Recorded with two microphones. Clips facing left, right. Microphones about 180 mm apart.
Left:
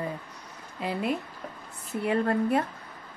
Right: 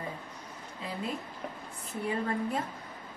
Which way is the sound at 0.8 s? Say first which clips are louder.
Left 7 dB; 70° left (ahead or behind).